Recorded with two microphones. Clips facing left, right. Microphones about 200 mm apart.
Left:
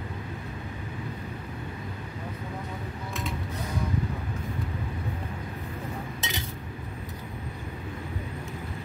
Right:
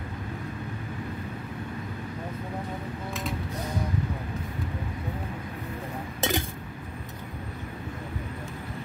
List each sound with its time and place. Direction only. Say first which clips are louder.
6.2 s chink: right 13 dB; 55° right (ahead or behind)